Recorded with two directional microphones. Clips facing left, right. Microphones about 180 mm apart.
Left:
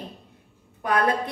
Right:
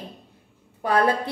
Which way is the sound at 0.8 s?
30° right (ahead or behind).